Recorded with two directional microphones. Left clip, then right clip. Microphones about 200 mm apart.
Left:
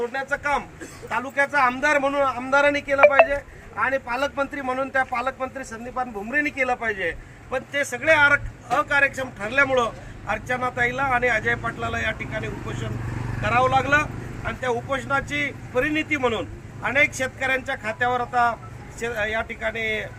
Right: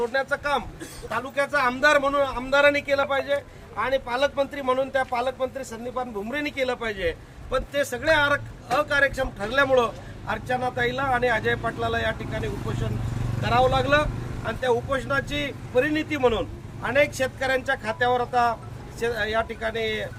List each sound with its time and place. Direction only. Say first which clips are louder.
0.1 s a man's voice: even; 10° right (ahead or behind)
3.8 s a man's voice: even; 35° right (ahead or behind)
7.5 s a man's voice: even; 15° right (ahead or behind)
13.5 s a man's voice: left 1 dB; 10° right (ahead or behind)